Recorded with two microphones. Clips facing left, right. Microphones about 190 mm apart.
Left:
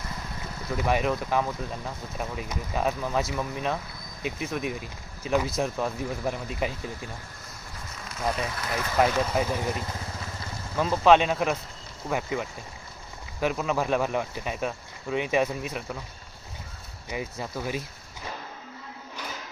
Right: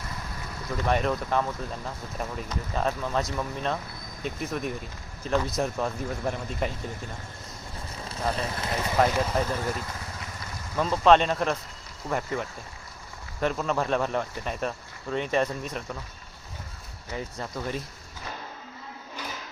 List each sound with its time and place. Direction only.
0.8 s speech: 5° left (ahead or behind)
7.9 s speech: 30° right (ahead or behind)
9.3 s speech: 10° left (ahead or behind)
10.8 s speech: 5° left (ahead or behind)
17.1 s speech: 10° left (ahead or behind)